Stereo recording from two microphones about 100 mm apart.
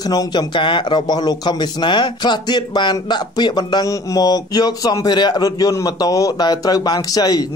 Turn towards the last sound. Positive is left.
turn(degrees=40)  # may be behind; listen again after turning